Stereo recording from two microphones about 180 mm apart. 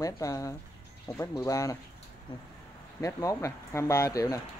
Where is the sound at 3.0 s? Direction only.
15° left (ahead or behind).